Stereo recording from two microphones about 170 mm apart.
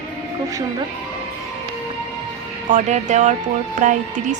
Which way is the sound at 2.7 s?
45° right (ahead or behind).